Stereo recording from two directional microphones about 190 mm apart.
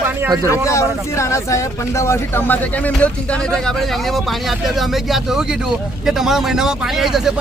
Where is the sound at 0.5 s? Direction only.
15° left (ahead or behind).